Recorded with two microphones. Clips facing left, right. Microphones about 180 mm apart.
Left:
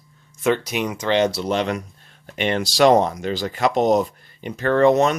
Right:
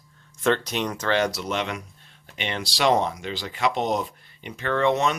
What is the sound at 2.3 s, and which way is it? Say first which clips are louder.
Speech: left 9 dB; 45° left (ahead or behind).